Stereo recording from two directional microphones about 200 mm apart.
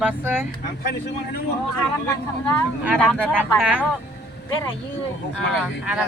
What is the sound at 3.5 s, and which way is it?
Speech, 5° right (ahead or behind).